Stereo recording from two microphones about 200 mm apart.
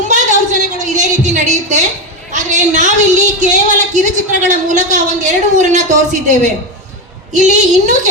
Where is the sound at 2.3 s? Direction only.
40° right (ahead or behind).